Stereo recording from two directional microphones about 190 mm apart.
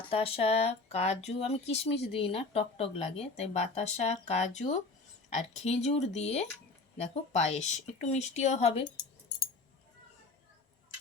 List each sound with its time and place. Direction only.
0.0 s speech: 30° left (ahead or behind)